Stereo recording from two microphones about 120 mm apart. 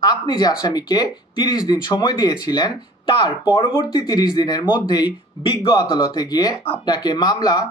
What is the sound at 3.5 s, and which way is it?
Speech, 30° left (ahead or behind).